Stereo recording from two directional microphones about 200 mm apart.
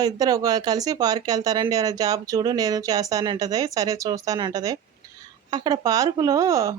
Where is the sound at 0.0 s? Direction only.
20° right (ahead or behind).